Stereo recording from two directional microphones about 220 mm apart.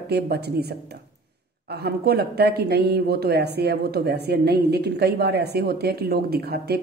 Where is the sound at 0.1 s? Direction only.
45° right (ahead or behind).